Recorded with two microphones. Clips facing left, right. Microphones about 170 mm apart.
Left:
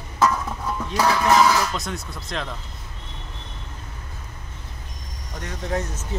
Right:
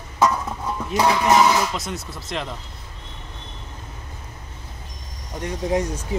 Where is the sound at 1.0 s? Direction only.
15° right (ahead or behind).